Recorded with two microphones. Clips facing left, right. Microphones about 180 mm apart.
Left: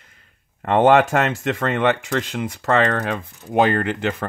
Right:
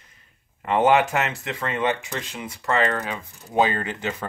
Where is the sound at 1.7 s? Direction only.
65° left (ahead or behind).